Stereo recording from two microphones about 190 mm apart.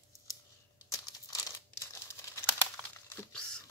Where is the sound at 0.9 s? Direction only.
15° left (ahead or behind).